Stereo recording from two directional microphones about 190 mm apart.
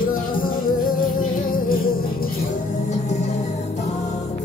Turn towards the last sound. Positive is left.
turn(degrees=35)  # may be behind; listen again after turning